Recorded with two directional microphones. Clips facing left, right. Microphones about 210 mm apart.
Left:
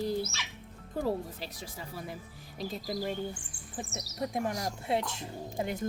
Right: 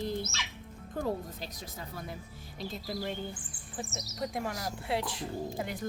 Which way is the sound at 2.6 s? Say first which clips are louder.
Left 2 dB; 40° left (ahead or behind).